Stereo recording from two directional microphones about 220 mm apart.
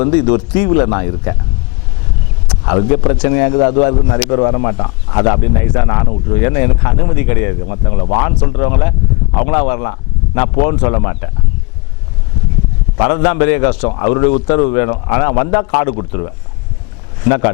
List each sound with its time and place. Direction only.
0.0 s speech: 10° left (ahead or behind)
2.5 s speech: 20° left (ahead or behind)
13.0 s speech: 15° left (ahead or behind)
17.2 s speech: 15° left (ahead or behind)